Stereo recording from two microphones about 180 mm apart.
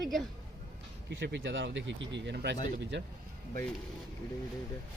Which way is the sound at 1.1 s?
85° right.